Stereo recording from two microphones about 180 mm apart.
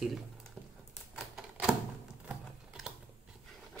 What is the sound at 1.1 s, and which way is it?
Typewriter, 5° right (ahead or behind).